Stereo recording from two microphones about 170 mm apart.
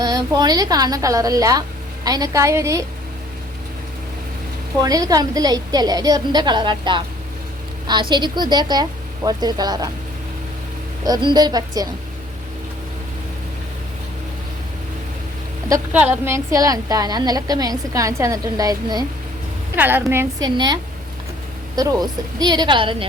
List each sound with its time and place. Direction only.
0.0 s a woman's voice: 25° right (ahead or behind)
4.8 s a woman's voice: 20° right (ahead or behind)
8.1 s a woman's voice: 25° right (ahead or behind)
11.0 s a woman's voice: 25° right (ahead or behind)
15.9 s a woman's voice: 10° right (ahead or behind)
19.7 s a woman's voice: 10° right (ahead or behind)
20.5 s a woman's voice: 25° right (ahead or behind)
21.8 s a woman's voice: 20° right (ahead or behind)